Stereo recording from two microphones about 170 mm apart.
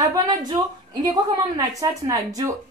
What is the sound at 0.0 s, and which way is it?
A woman's voice, 20° right (ahead or behind).